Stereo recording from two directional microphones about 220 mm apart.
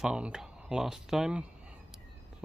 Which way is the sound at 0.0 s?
5° right (ahead or behind).